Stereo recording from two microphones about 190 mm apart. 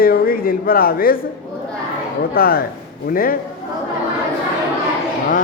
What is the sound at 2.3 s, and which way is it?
A man's voice, 50° left (ahead or behind).